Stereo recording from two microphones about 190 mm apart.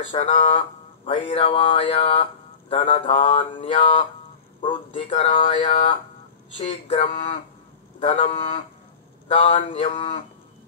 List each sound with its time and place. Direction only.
0.1 s speech: 35° left (ahead or behind)